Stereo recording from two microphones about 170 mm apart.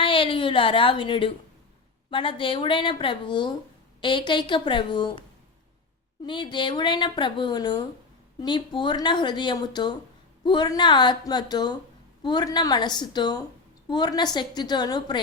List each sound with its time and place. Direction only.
0.0 s a woman's voice: 30° left (ahead or behind)
6.2 s speech: 30° left (ahead or behind)